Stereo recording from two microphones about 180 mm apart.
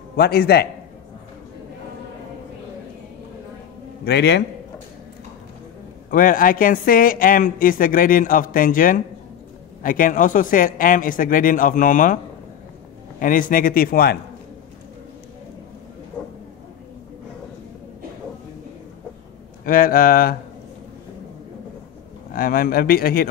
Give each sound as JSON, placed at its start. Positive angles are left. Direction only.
{"t": 0.1, "sound": "speech", "side_deg": 60}
{"t": 4.0, "sound": "a man's voice", "side_deg": 65}
{"t": 6.0, "sound": "speech", "side_deg": 50}
{"t": 13.2, "sound": "speech", "side_deg": 50}
{"t": 16.2, "sound": "a sound", "side_deg": 5}
{"t": 19.6, "sound": "speech", "side_deg": 50}
{"t": 22.3, "sound": "speech", "side_deg": 55}